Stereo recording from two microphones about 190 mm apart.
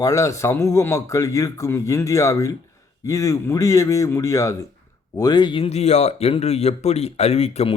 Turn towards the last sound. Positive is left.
turn(degrees=35)  # may be behind; listen again after turning